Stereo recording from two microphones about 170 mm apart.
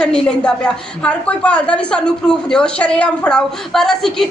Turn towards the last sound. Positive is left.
turn(degrees=0)  # may be behind; listen again after turning